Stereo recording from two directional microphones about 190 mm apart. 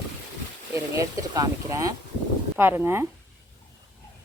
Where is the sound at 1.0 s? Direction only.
15° right (ahead or behind).